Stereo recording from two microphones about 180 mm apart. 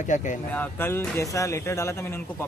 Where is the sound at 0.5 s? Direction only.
10° left (ahead or behind).